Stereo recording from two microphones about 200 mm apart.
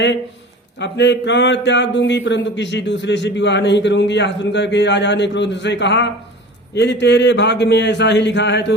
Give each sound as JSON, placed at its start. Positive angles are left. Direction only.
{"t": 0.8, "sound": "speech", "side_deg": 60}